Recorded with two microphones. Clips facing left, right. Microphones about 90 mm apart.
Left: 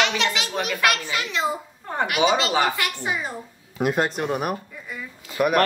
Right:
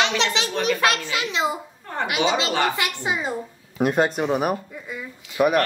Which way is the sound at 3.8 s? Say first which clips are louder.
Right 2 dB; centre (ahead or behind).